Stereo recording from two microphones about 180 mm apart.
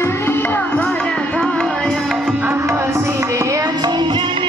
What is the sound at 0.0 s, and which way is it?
Music, 10° left (ahead or behind).